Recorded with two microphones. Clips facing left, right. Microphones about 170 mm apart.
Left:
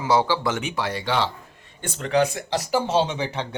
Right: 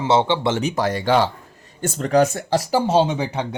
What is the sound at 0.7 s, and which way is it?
Speech, 45° right (ahead or behind).